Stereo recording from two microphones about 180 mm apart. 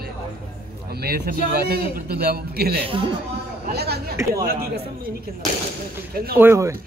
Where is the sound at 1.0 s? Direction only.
60° right (ahead or behind).